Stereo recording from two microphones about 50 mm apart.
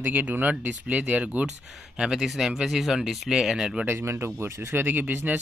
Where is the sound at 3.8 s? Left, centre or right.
Right.